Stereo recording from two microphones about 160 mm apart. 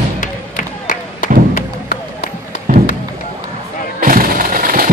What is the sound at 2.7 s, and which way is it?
Fireworks, 55° right (ahead or behind).